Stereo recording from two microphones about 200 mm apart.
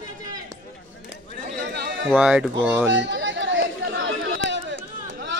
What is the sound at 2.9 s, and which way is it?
Chatter, 65° right (ahead or behind).